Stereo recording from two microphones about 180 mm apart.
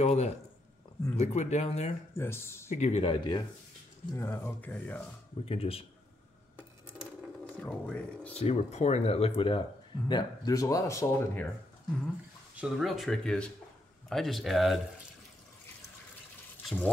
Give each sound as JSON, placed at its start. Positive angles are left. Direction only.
{"t": 0.0, "sound": "speech", "side_deg": 35}
{"t": 2.1, "sound": "speech", "side_deg": 15}
{"t": 2.7, "sound": "speech", "side_deg": 35}
{"t": 4.1, "sound": "speech", "side_deg": 10}
{"t": 5.4, "sound": "speech", "side_deg": 30}
{"t": 7.4, "sound": "speech", "side_deg": 5}
{"t": 8.4, "sound": "speech", "side_deg": 35}
{"t": 10.0, "sound": "speech", "side_deg": 20}
{"t": 12.5, "sound": "speech", "side_deg": -5}
{"t": 16.6, "sound": "speech", "side_deg": 5}